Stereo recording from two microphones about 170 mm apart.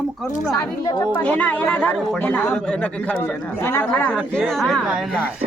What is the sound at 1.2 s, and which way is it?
Speech, 10° left (ahead or behind).